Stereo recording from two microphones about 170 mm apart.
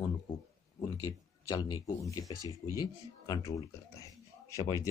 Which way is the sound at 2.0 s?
20° left (ahead or behind).